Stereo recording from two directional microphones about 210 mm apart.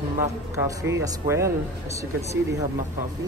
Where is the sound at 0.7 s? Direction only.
15° right (ahead or behind).